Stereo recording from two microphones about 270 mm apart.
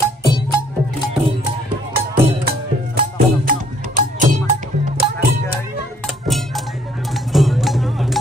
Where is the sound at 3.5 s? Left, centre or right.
Right.